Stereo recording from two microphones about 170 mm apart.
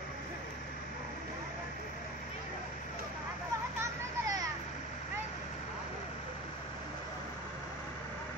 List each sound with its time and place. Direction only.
3.8 s vehicle: 20° right (ahead or behind)